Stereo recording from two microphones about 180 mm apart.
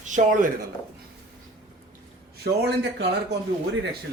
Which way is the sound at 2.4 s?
65° right (ahead or behind).